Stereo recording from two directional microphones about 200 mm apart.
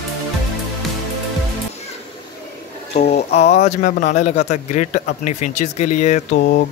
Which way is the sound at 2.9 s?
35° left (ahead or behind).